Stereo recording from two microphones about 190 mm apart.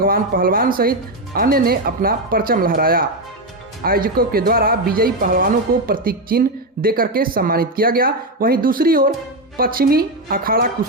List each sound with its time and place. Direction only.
0.0 s speech: 50° right (ahead or behind)